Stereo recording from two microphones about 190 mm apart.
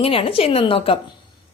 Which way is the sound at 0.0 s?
30° left (ahead or behind).